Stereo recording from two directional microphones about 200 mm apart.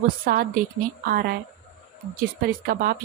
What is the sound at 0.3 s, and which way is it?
Speech, 45° right (ahead or behind).